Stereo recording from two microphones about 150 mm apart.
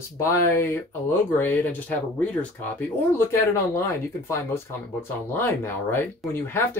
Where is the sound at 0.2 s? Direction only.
15° left (ahead or behind).